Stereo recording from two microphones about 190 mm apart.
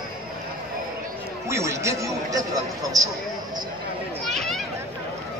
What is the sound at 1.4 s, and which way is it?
A man's voice, 15° right (ahead or behind).